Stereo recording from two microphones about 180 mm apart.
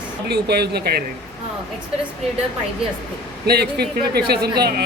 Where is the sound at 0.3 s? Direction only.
65° right (ahead or behind).